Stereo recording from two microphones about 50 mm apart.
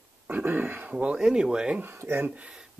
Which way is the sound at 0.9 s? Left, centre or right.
Right.